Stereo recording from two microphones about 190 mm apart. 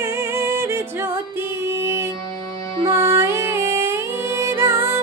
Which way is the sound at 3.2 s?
15° right (ahead or behind).